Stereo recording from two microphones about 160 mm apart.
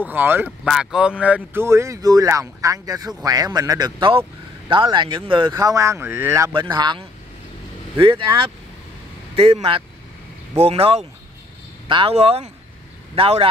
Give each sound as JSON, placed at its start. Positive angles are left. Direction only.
{"t": 0.0, "sound": "speech", "side_deg": -10}
{"t": 0.5, "sound": "speech", "side_deg": 0}
{"t": 6.5, "sound": "speech", "side_deg": -30}